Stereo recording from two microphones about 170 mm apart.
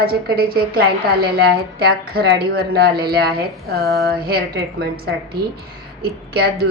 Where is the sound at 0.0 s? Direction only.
65° right (ahead or behind).